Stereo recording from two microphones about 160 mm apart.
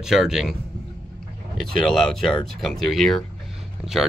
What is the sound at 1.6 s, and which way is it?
Speech, centre (ahead or behind).